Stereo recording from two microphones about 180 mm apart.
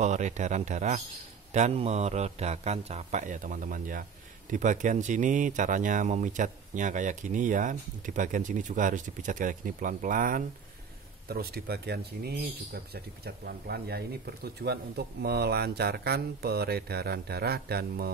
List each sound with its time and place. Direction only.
0.0 s a man's voice: 40° right (ahead or behind)
11.2 s speech: 60° right (ahead or behind)